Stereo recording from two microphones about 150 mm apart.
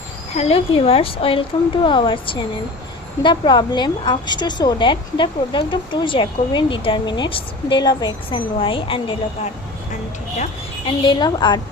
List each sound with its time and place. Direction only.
0.3 s a woman's voice: 40° left (ahead or behind)
10.8 s a woman's voice: 30° left (ahead or behind)